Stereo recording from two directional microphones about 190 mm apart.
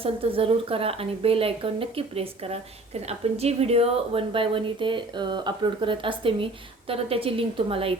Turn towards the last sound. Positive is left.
turn(degrees=-30)  # may be behind; listen again after turning